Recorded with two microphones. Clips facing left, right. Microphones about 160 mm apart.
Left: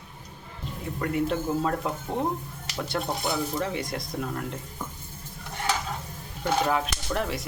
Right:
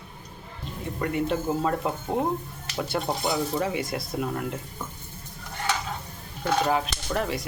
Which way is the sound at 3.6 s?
5° right (ahead or behind).